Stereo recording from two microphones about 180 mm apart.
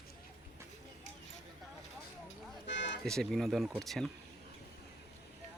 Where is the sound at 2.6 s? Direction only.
80° left.